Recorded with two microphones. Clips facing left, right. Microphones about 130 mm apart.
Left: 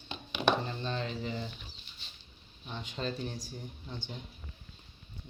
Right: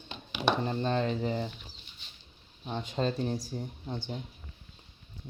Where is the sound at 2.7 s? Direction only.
40° right (ahead or behind).